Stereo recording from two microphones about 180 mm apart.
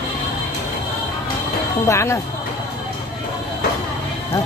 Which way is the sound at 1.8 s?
15° left (ahead or behind).